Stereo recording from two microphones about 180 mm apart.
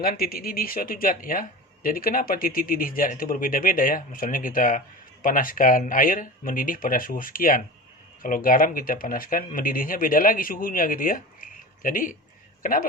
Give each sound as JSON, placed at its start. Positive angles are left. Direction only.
{"t": 0.0, "sound": "speech", "side_deg": 55}